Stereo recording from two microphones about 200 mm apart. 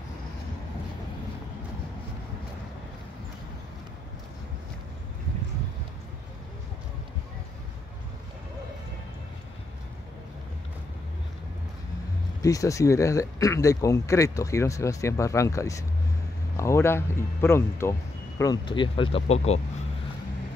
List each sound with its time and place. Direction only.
12.4 s speech: 15° left (ahead or behind); by 19.6 s 30° left (ahead or behind)